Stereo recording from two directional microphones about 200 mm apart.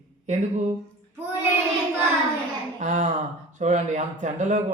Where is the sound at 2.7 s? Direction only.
40° right (ahead or behind).